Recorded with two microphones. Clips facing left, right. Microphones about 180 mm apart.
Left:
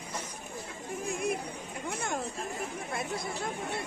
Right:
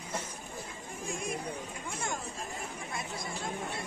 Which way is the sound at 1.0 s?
60° left (ahead or behind).